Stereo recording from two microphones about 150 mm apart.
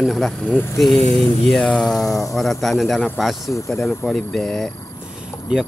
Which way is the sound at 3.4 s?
20° left (ahead or behind).